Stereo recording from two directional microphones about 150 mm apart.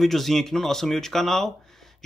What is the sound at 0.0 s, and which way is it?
A man's voice, centre (ahead or behind).